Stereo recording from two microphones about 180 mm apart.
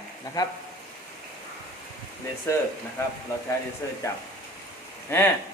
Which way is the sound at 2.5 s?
15° left (ahead or behind).